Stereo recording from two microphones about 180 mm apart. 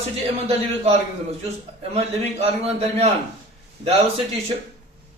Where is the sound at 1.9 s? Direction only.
35° right (ahead or behind).